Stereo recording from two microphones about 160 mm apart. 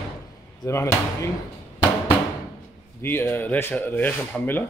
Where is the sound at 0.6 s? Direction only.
15° left (ahead or behind).